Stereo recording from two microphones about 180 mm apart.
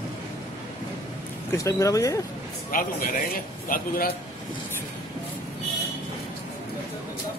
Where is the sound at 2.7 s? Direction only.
50° left (ahead or behind).